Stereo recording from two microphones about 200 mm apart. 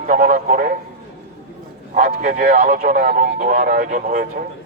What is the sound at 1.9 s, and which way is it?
A man's voice, 40° right (ahead or behind).